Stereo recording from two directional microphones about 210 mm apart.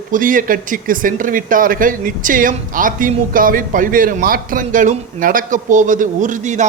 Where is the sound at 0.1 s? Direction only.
40° right (ahead or behind).